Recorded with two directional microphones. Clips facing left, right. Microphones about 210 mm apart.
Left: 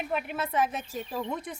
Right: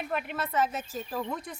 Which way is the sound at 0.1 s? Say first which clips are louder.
Left 1 dB; 10° left (ahead or behind).